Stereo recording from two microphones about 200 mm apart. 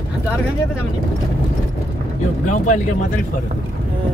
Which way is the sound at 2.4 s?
40° left (ahead or behind).